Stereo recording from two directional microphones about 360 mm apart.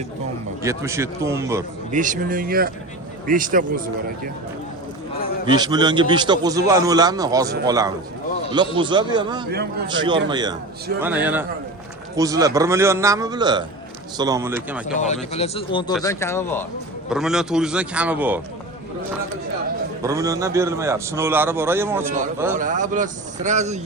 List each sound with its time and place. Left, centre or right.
0.6 s a man's voice: centre
1.9 s speech: right
5.5 s a man's voice: centre
14.9 s a man's voice: centre
15.9 s a man's voice: centre
20.0 s a man's voice: centre
22.5 s speech: right